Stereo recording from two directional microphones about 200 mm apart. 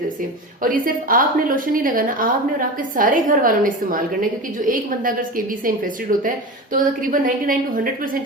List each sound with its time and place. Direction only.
0.6 s a woman's voice: 45° right (ahead or behind)